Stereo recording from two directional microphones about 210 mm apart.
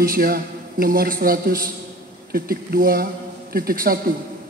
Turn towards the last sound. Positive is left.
turn(degrees=-45)  # may be behind; listen again after turning